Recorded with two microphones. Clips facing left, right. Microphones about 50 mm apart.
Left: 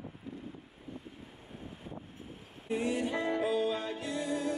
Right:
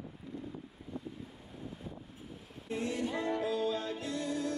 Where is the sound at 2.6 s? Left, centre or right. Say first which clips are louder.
Left 3 dB; centre.